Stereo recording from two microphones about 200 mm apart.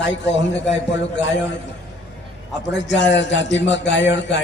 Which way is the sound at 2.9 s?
65° left (ahead or behind).